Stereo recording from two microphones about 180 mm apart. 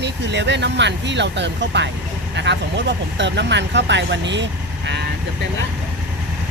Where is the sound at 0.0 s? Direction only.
75° right (ahead or behind).